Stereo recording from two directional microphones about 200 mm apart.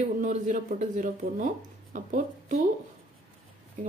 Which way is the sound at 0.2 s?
40° right (ahead or behind).